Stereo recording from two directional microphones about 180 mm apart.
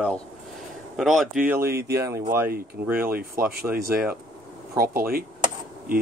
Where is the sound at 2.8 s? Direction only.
10° right (ahead or behind).